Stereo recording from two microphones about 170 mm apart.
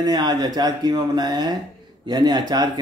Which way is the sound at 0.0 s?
25° right (ahead or behind).